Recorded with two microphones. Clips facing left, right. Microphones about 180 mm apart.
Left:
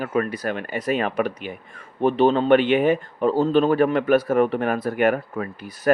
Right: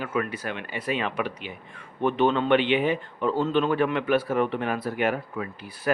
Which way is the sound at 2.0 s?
35° left (ahead or behind).